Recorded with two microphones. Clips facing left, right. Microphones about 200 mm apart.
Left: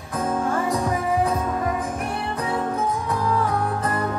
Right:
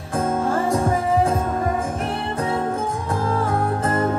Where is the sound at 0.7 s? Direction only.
50° right (ahead or behind).